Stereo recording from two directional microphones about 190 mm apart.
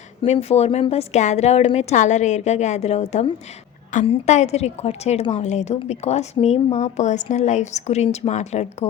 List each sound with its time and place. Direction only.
0.2 s a woman's voice: 30° left (ahead or behind)